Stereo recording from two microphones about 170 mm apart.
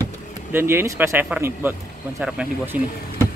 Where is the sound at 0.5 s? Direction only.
15° right (ahead or behind).